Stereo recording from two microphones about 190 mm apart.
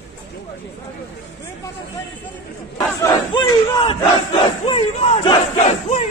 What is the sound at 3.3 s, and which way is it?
Battle cry, 25° left (ahead or behind).